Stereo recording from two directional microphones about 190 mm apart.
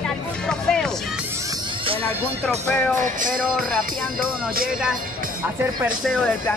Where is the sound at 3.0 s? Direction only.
45° right (ahead or behind).